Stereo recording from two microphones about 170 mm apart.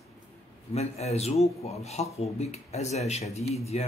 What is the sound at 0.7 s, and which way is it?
Speech, 40° left (ahead or behind).